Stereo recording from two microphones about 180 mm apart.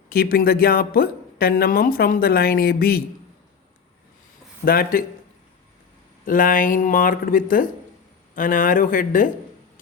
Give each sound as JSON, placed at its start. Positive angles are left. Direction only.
{"t": 0.1, "sound": "speech", "side_deg": 55}
{"t": 4.6, "sound": "speech", "side_deg": 55}
{"t": 6.2, "sound": "speech", "side_deg": 50}